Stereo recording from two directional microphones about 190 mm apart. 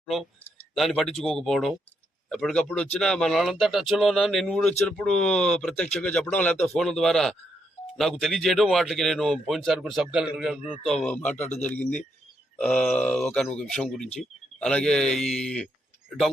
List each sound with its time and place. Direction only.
0.0 s speech: 5° left (ahead or behind)